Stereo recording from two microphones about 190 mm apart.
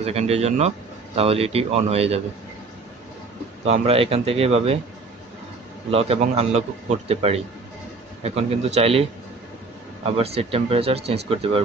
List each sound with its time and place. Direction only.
0.0 s speech: 35° right (ahead or behind)
3.6 s speech: 35° right (ahead or behind)
5.9 s speech: 30° right (ahead or behind)